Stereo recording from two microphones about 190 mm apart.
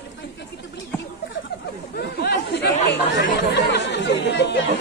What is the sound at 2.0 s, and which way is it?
Speech, 60° left (ahead or behind).